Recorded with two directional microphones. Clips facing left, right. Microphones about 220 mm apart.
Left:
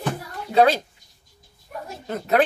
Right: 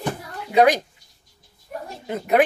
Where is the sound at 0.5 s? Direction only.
15° right (ahead or behind).